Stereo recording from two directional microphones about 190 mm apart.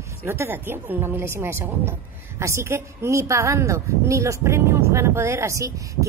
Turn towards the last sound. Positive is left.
turn(degrees=-15)  # may be behind; listen again after turning